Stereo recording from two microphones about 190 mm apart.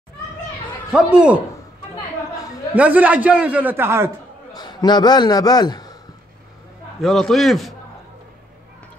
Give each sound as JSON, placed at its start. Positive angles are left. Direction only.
{"t": 0.9, "sound": "a man's voice", "side_deg": -5}
{"t": 2.7, "sound": "a man's voice", "side_deg": -10}
{"t": 4.6, "sound": "a man's voice", "side_deg": 20}
{"t": 7.0, "sound": "a man's voice", "side_deg": 0}